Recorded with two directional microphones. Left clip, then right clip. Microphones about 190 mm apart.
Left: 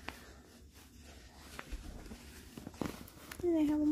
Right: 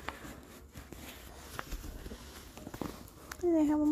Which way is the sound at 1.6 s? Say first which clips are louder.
Right 6 dB; 55° right (ahead or behind).